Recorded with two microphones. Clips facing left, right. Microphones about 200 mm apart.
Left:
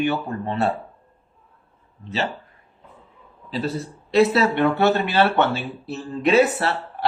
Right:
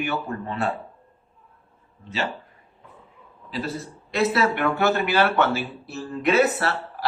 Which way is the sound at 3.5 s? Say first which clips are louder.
Left 4 dB; 30° left (ahead or behind).